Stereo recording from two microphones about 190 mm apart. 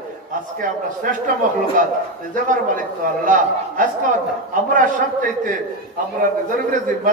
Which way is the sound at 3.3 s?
45° right (ahead or behind).